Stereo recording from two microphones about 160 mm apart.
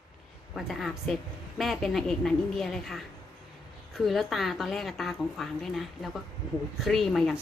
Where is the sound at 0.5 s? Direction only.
Centre (ahead or behind).